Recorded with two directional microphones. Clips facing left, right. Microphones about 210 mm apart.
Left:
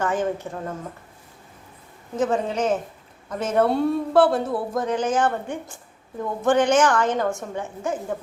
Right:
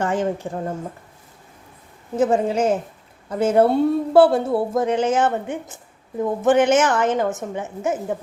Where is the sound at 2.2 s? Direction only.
30° right (ahead or behind).